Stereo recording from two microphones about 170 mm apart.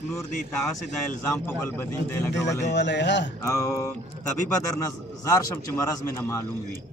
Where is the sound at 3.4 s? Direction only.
15° left (ahead or behind).